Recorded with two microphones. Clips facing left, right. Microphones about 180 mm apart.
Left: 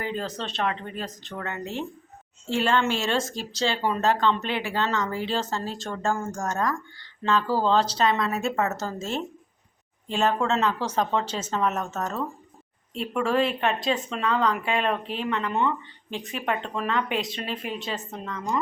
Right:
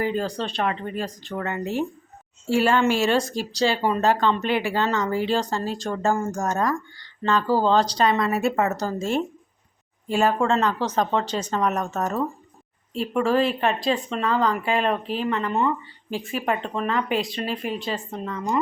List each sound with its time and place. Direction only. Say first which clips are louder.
0.0 s speech: right 6 dB; 5° right (ahead or behind)
6.0 s speech: right 3 dB; 20° right (ahead or behind)
7.2 s speech: right 3 dB; 5° left (ahead or behind)
10.1 s speech: right 3 dB; 10° right (ahead or behind)
10.4 s speech: right 3 dB; 5° left (ahead or behind)
11.9 s speech: right 4 dB; 15° right (ahead or behind)
12.9 s speech: right 3 dB; centre (ahead or behind)